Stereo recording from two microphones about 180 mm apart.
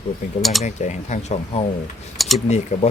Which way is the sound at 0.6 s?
40° left (ahead or behind).